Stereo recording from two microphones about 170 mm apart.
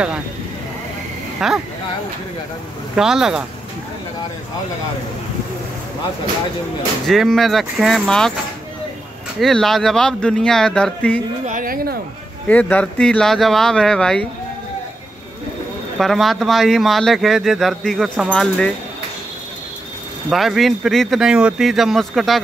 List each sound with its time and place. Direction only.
1.4 s speech: 5° right (ahead or behind)
3.0 s speech: 5° right (ahead or behind)
7.1 s speech: centre (ahead or behind)
9.4 s speech: centre (ahead or behind)
11.4 s speech: 55° right (ahead or behind)
12.4 s speech: 10° left (ahead or behind)
16.0 s speech: centre (ahead or behind)
20.2 s speech: centre (ahead or behind)